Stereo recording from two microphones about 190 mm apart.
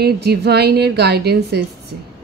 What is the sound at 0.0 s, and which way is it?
Speech, 60° right (ahead or behind).